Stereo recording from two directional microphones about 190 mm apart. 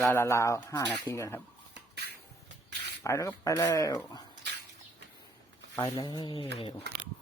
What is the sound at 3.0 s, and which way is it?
Speech, 15° left (ahead or behind).